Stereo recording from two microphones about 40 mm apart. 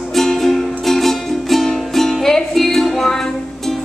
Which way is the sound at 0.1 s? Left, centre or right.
Centre.